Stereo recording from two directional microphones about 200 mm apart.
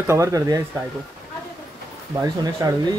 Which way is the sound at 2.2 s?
15° right (ahead or behind).